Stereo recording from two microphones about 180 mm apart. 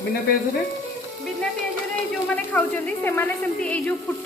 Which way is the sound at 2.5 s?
10° left (ahead or behind).